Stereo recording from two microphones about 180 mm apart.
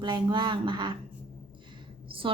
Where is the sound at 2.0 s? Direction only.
30° right (ahead or behind).